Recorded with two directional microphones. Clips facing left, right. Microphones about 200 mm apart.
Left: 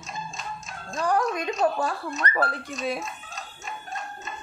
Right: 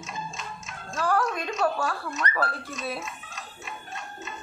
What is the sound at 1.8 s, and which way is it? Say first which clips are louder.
Speech: left 2 dB; 35° left (ahead or behind).